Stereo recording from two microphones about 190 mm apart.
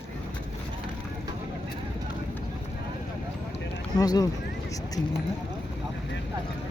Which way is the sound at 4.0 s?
20° left (ahead or behind).